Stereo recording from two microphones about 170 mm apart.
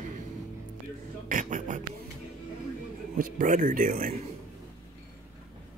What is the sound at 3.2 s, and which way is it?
Speech, 50° right (ahead or behind).